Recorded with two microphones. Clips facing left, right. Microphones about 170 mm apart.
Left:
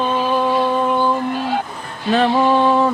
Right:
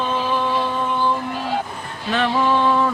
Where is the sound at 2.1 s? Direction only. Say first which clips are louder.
Left 4 dB; 35° left (ahead or behind).